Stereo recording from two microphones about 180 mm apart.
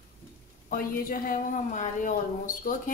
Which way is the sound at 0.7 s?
55° left (ahead or behind).